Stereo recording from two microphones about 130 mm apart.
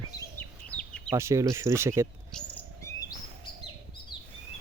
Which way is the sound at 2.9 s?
25° left (ahead or behind).